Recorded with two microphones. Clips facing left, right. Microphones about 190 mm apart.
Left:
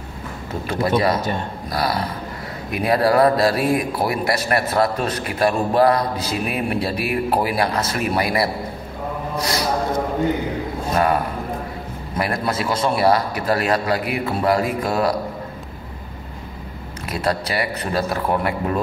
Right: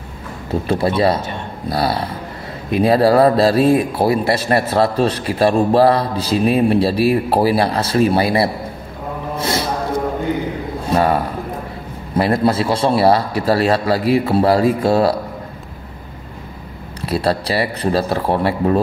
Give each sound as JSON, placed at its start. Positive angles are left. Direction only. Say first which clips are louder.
{"t": 0.7, "sound": "a man's voice", "louder": "right 3 dB", "side_deg": -30}
{"t": 9.4, "sound": "a sound", "louder": "right 3 dB", "side_deg": -25}
{"t": 12.2, "sound": "a man's voice", "louder": "right 7 dB", "side_deg": -30}
{"t": 17.0, "sound": "a man's voice", "louder": "right 4 dB", "side_deg": -30}